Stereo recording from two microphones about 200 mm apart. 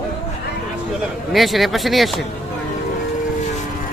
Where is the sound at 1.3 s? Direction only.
Centre (ahead or behind).